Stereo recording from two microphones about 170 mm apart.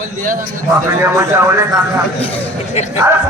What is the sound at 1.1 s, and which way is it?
Speech, 15° right (ahead or behind).